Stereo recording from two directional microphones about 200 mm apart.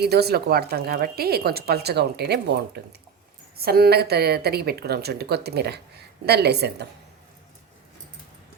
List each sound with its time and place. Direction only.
0.0 s a woman's voice: 55° right (ahead or behind)